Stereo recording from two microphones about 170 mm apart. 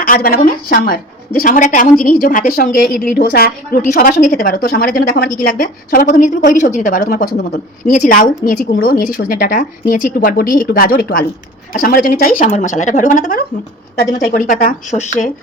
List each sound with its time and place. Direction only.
0.0 s a woman's voice: 60° left (ahead or behind)
12.4 s speech: 45° left (ahead or behind)